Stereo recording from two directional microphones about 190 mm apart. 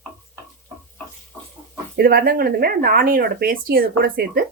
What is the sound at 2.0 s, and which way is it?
Speech, 50° right (ahead or behind).